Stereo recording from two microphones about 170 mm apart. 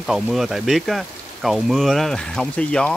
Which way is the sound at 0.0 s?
Centre (ahead or behind).